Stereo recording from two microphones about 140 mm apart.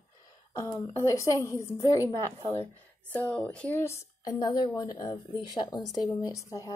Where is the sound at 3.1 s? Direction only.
10° left (ahead or behind).